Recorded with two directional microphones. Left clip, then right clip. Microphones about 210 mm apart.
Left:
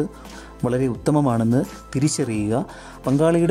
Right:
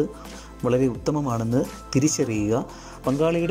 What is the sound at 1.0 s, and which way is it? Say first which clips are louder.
Speech: left 5 dB; 20° left (ahead or behind).